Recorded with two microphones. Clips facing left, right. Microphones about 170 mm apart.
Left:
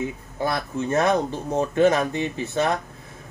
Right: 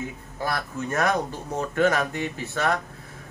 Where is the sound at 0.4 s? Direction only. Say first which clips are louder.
Left 4 dB; 20° left (ahead or behind).